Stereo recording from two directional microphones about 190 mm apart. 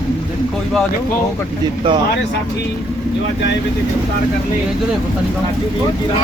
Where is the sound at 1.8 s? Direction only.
25° right (ahead or behind).